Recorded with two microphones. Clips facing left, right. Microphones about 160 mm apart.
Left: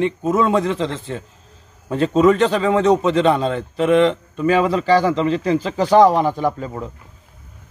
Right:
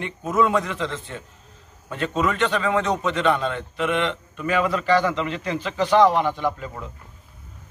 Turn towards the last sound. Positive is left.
turn(degrees=40)  # may be behind; listen again after turning